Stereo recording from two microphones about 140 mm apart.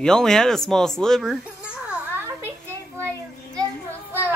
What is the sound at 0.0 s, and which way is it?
Speech, 5° left (ahead or behind).